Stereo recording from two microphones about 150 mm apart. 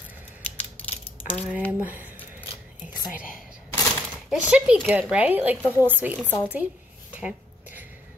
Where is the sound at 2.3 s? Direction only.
10° right (ahead or behind).